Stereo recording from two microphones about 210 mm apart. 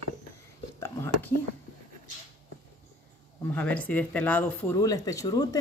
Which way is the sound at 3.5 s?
5° left (ahead or behind).